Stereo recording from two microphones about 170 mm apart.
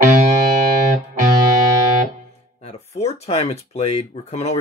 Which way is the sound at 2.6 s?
40° left (ahead or behind).